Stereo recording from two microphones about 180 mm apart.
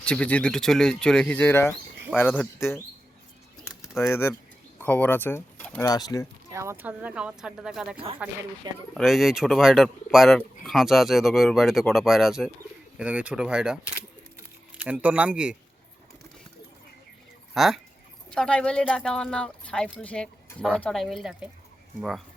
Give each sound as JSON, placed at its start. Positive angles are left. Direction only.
{"t": 0.0, "sound": "speech", "side_deg": 5}
{"t": 3.9, "sound": "speech", "side_deg": 15}
{"t": 5.8, "sound": "speech", "side_deg": 20}
{"t": 6.5, "sound": "speech", "side_deg": -15}
{"t": 8.7, "sound": "speech", "side_deg": -20}
{"t": 9.0, "sound": "speech", "side_deg": 0}
{"t": 14.3, "sound": "a sound", "side_deg": -10}
{"t": 17.5, "sound": "speech", "side_deg": 0}